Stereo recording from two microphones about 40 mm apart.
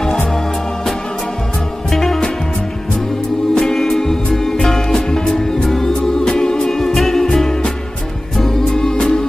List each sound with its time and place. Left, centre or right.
1.9 s music: centre
3.5 s music: centre